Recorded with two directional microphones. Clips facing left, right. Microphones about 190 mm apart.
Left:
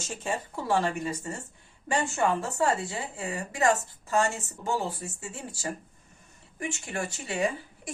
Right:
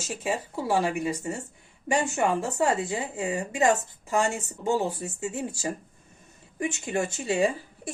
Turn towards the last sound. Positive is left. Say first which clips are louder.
# right 4 dB
turn(degrees=-25)  # may be behind; listen again after turning